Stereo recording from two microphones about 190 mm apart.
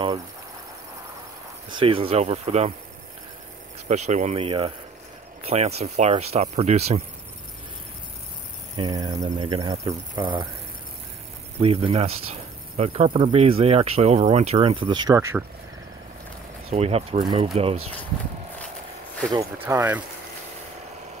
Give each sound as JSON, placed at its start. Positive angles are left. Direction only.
{"t": 1.7, "sound": "speech", "side_deg": -25}
{"t": 3.9, "sound": "speech", "side_deg": -40}
{"t": 8.7, "sound": "speech", "side_deg": -20}
{"t": 11.6, "sound": "speech", "side_deg": -30}
{"t": 16.7, "sound": "speech", "side_deg": -35}
{"t": 19.6, "sound": "speech", "side_deg": -10}